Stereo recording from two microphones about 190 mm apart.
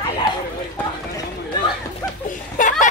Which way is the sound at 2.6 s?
40° left (ahead or behind).